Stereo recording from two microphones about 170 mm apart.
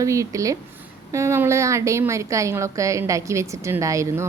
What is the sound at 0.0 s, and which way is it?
A woman's voice, 20° right (ahead or behind).